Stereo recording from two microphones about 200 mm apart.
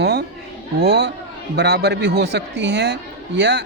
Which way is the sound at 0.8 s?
55° right (ahead or behind).